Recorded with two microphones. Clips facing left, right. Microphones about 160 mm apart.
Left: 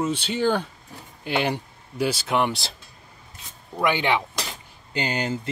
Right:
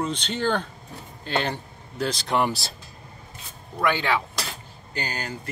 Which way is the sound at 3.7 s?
15° left (ahead or behind).